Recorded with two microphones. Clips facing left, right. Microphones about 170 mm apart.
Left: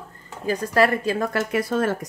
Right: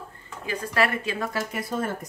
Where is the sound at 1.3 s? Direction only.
70° left (ahead or behind).